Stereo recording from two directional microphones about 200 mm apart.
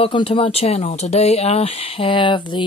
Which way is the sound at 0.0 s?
25° left (ahead or behind).